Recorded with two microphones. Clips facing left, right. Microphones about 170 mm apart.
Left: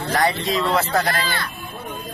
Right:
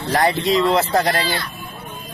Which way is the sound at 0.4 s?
Centre (ahead or behind).